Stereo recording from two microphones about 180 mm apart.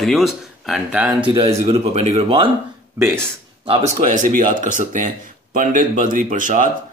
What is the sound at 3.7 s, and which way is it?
Speech, 40° right (ahead or behind).